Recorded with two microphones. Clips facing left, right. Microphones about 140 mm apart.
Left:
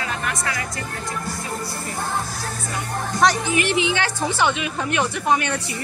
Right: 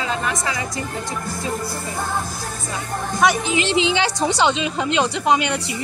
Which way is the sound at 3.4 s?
20° right (ahead or behind).